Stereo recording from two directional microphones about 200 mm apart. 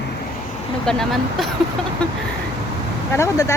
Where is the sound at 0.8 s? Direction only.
Centre (ahead or behind).